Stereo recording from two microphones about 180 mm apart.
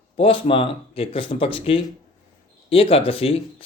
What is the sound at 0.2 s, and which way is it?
Speech, 30° left (ahead or behind).